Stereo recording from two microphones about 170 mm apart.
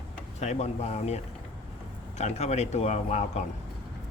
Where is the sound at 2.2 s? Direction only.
40° left (ahead or behind).